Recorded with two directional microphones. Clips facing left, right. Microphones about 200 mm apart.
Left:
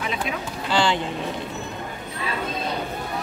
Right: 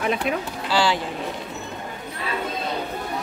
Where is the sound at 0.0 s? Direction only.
50° right (ahead or behind).